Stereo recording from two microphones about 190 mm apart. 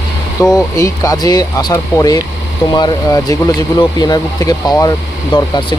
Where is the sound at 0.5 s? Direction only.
20° left (ahead or behind).